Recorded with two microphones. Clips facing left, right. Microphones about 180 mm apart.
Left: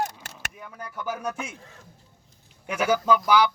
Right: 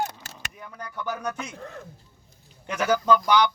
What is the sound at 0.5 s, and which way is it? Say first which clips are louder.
A man's voice: right 1 dB; 5° left (ahead or behind).